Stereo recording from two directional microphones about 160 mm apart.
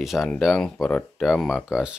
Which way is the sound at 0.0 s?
Centre (ahead or behind).